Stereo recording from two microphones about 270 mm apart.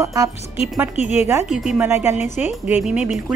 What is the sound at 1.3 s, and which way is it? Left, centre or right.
A woman's voice, centre.